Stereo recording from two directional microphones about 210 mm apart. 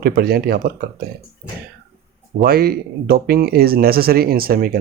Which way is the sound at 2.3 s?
45° right (ahead or behind).